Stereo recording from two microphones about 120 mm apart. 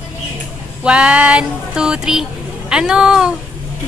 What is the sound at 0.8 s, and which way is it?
Speech, 10° right (ahead or behind).